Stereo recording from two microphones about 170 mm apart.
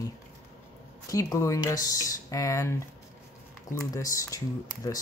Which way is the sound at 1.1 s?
20° left (ahead or behind).